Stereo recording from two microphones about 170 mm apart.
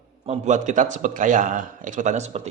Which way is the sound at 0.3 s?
45° right (ahead or behind).